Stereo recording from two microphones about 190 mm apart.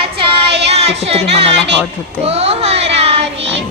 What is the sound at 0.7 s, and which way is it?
Speech, 30° right (ahead or behind).